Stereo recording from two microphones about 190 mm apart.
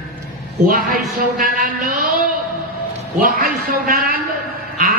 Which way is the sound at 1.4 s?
45° right (ahead or behind).